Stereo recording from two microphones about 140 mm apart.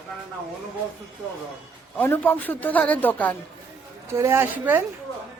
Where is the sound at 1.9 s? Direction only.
15° left (ahead or behind).